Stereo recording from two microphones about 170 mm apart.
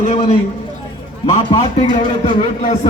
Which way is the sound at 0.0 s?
40° left (ahead or behind).